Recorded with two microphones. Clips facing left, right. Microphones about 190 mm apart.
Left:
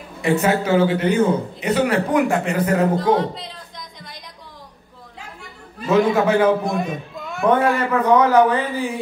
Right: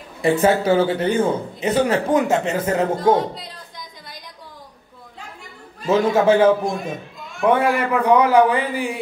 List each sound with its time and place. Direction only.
0.2 s a man's voice: 30° right (ahead or behind)
3.3 s a sound: centre (ahead or behind)
5.9 s a man's voice: 30° right (ahead or behind)
7.4 s a man's voice: 10° right (ahead or behind)